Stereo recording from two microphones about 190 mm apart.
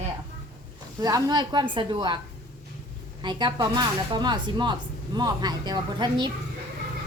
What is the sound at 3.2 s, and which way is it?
Speech, 25° right (ahead or behind).